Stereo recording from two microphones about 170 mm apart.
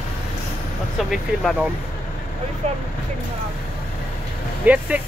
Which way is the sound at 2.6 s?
40° right (ahead or behind).